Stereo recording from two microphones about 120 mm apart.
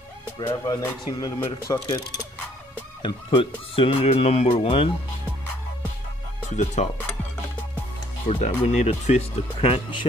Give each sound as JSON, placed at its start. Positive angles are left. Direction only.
{"t": 0.4, "sound": "speech", "side_deg": 35}
{"t": 6.5, "sound": "speech", "side_deg": 85}
{"t": 8.4, "sound": "speech", "side_deg": 65}